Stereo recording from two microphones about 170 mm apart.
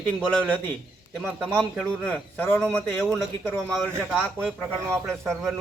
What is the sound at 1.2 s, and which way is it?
Speech, 5° right (ahead or behind).